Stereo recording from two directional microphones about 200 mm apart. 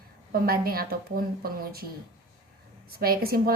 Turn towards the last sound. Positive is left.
turn(degrees=-50)  # may be behind; listen again after turning